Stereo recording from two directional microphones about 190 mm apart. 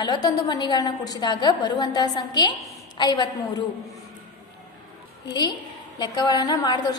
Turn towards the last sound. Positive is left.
turn(degrees=20)  # may be behind; listen again after turning